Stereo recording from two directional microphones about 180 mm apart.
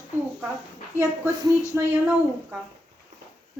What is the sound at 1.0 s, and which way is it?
Speech, 20° right (ahead or behind).